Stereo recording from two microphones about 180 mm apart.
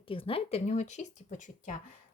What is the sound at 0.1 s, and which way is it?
Speech, 30° left (ahead or behind).